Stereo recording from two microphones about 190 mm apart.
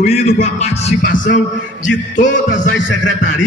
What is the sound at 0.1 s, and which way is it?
Music, 35° left (ahead or behind).